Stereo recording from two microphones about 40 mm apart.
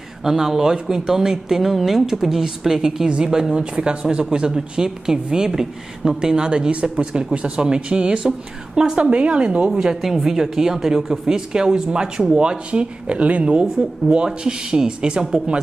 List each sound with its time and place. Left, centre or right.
0.2 s speech: centre; by 9.7 s right
10.0 s speech: centre; by 15.2 s right